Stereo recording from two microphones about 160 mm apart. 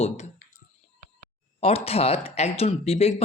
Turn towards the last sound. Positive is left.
turn(degrees=40)  # may be behind; listen again after turning